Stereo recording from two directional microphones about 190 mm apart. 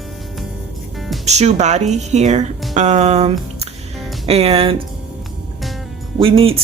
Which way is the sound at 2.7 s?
40° right (ahead or behind).